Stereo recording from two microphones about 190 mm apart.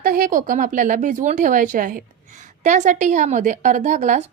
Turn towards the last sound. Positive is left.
turn(degrees=-40)  # may be behind; listen again after turning